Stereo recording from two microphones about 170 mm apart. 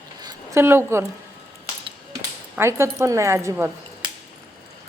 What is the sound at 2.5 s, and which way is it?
Speech, 15° right (ahead or behind).